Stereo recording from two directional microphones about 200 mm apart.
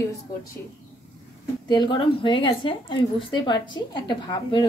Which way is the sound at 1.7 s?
25° left (ahead or behind).